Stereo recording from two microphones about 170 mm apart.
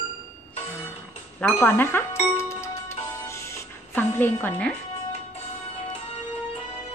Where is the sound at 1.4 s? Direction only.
10° left (ahead or behind).